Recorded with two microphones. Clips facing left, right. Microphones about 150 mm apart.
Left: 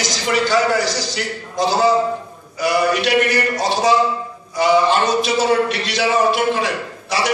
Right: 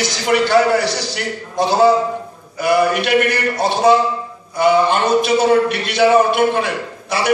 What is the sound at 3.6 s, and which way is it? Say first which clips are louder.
A man's voice: right 4 dB; 55° right (ahead or behind).